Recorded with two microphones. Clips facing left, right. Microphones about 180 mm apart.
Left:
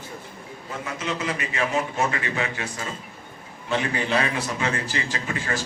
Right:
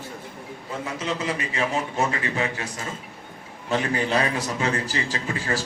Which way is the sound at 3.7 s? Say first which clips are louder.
Right 1 dB; 40° right (ahead or behind).